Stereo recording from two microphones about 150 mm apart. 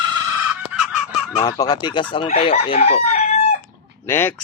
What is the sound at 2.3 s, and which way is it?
Chicken, 40° left (ahead or behind).